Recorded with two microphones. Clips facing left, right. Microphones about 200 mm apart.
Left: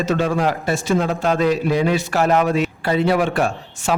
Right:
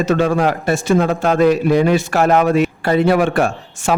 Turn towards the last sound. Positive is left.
turn(degrees=-50)  # may be behind; listen again after turning